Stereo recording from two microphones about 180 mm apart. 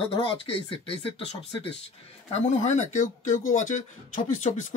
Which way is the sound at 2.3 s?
40° left (ahead or behind).